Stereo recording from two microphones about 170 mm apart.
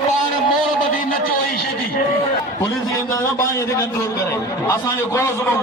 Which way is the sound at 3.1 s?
20° left (ahead or behind).